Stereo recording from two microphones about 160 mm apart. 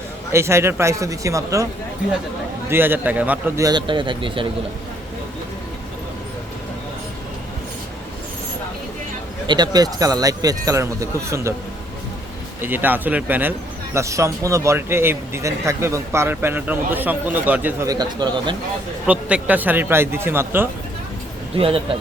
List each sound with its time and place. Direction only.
0.3 s speech: 15° right (ahead or behind)
2.6 s speech: 15° right (ahead or behind)
3.6 s speech: 25° right (ahead or behind)
9.5 s speech: 25° right (ahead or behind)
12.6 s speech: 10° right (ahead or behind)
17.8 s speech: 25° right (ahead or behind)
19.0 s speech: 10° right (ahead or behind)